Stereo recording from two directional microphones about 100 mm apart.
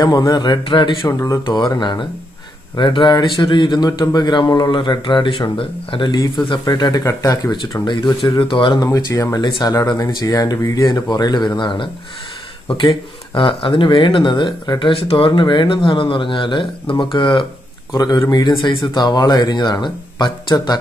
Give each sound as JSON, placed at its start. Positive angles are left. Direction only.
{"t": 0.0, "sound": "a man's voice", "side_deg": 40}
{"t": 1.0, "sound": "speech", "side_deg": 30}
{"t": 1.4, "sound": "a man's voice", "side_deg": 50}
{"t": 7.8, "sound": "a man's voice", "side_deg": 50}
{"t": 8.7, "sound": "a man's voice", "side_deg": 35}
{"t": 13.3, "sound": "speech", "side_deg": 55}
{"t": 17.9, "sound": "a man's voice", "side_deg": 40}